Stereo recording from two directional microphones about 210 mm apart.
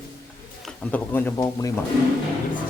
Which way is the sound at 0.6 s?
10° left (ahead or behind).